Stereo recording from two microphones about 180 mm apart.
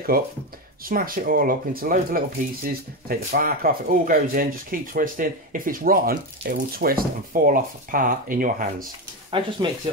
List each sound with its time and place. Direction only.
0.1 s speech: 55° right (ahead or behind)
9.3 s speech: 30° right (ahead or behind)